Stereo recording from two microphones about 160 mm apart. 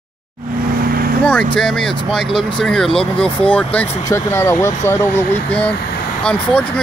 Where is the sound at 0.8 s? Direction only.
65° right (ahead or behind).